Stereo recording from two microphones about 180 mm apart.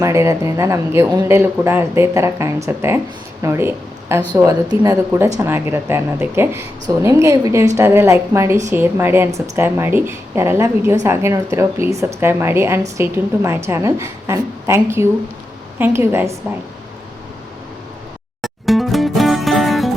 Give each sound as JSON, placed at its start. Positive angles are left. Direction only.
{"t": 0.0, "sound": "a woman's voice", "side_deg": -15}
{"t": 18.4, "sound": "music", "side_deg": 0}